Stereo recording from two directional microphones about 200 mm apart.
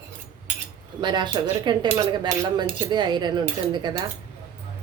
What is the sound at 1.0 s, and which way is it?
A woman's voice, 20° right (ahead or behind).